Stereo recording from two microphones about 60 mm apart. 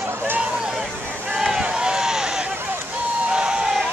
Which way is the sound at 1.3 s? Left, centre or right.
Centre.